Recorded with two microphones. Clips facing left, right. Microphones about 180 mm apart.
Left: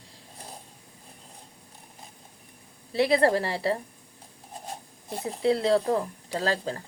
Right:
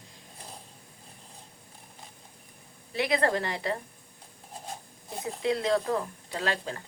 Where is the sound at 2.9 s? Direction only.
35° left (ahead or behind).